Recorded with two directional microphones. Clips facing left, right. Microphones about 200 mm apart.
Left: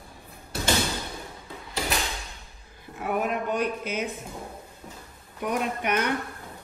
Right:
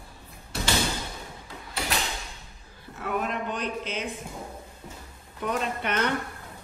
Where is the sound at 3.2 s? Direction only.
10° left (ahead or behind).